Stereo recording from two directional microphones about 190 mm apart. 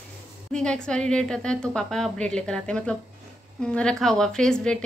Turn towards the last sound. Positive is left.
turn(degrees=5)  # may be behind; listen again after turning